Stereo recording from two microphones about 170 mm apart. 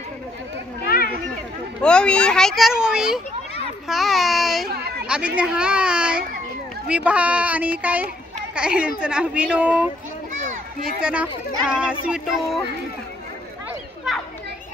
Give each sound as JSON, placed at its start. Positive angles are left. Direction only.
{"t": 0.8, "sound": "children playing", "side_deg": 60}
{"t": 1.8, "sound": "speech", "side_deg": 5}
{"t": 4.6, "sound": "speech", "side_deg": -70}
{"t": 5.0, "sound": "speech", "side_deg": -5}
{"t": 11.0, "sound": "speech", "side_deg": -5}